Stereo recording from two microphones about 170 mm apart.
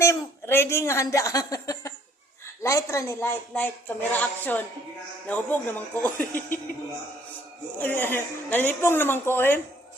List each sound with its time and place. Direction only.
0.0 s a woman's voice: 15° left (ahead or behind)
7.8 s a woman's voice: 10° left (ahead or behind)